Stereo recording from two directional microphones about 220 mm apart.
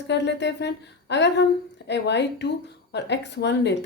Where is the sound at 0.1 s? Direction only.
50° left (ahead or behind).